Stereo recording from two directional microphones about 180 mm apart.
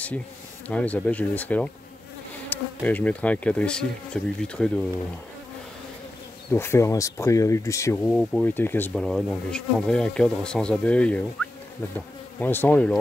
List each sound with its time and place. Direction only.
0.7 s insect: 10° left (ahead or behind)
6.5 s insect: 15° left (ahead or behind)
8.0 s insect: 5° left (ahead or behind)
9.0 s speech: centre (ahead or behind)
12.4 s insect: 10° left (ahead or behind)